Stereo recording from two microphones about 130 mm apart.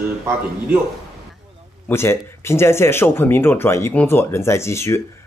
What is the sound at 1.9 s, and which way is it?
Speech, 20° left (ahead or behind).